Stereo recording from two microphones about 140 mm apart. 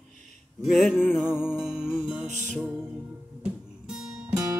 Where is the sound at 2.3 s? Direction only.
60° right (ahead or behind).